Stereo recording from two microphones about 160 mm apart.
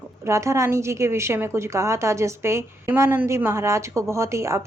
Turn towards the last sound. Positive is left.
turn(degrees=-20)  # may be behind; listen again after turning